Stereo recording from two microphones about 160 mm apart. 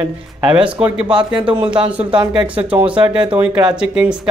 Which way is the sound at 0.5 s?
5° right (ahead or behind).